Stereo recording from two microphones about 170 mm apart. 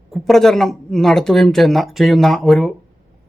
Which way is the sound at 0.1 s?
Centre (ahead or behind).